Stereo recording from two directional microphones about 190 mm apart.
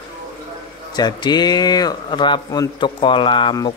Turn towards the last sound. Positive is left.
turn(degrees=25)  # may be behind; listen again after turning